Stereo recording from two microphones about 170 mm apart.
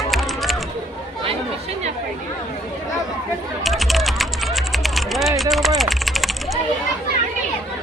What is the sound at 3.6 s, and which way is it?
Typing, centre (ahead or behind).